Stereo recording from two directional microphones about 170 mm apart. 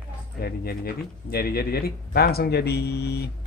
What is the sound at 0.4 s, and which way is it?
Speech, 65° left (ahead or behind).